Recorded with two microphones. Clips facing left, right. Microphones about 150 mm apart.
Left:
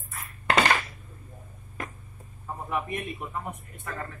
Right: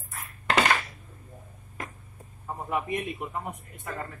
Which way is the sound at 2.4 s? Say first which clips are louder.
Right 1 dB; 20° right (ahead or behind).